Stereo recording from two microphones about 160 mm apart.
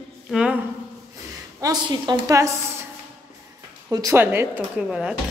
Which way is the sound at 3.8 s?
20° right (ahead or behind).